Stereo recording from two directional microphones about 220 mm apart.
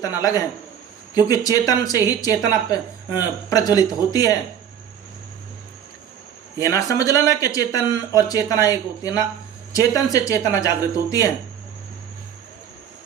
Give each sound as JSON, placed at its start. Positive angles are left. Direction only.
{"t": 0.0, "sound": "speech", "side_deg": 15}
{"t": 6.6, "sound": "speech", "side_deg": 15}